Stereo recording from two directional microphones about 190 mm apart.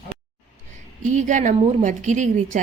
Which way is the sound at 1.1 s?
40° right (ahead or behind).